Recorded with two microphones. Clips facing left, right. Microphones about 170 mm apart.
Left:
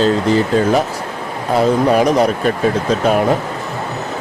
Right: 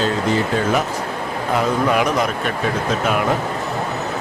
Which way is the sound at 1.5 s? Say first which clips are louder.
Left 5 dB; 35° left (ahead or behind).